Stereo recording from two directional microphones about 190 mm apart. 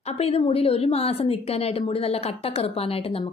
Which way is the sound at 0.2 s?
30° left (ahead or behind).